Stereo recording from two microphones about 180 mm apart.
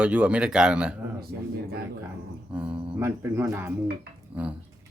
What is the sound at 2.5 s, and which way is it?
A man's voice, 5° right (ahead or behind).